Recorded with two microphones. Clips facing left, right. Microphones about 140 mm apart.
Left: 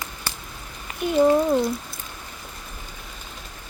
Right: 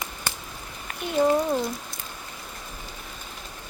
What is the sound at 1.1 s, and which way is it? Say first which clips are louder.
Speech: left 4 dB; 5° left (ahead or behind).